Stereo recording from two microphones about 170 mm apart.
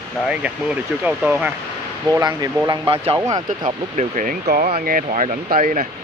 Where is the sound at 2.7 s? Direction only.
35° right (ahead or behind).